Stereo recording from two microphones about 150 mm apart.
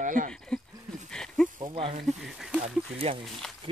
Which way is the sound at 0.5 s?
5° left (ahead or behind).